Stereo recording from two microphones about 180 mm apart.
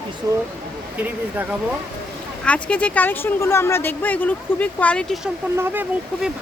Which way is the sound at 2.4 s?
5° left (ahead or behind).